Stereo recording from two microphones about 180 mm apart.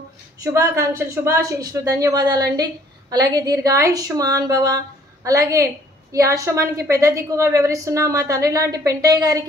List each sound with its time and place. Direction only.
0.4 s a woman's voice: 15° right (ahead or behind)